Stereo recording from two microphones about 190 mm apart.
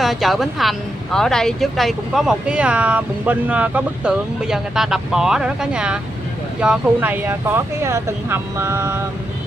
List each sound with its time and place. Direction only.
0.0 s speech: centre (ahead or behind)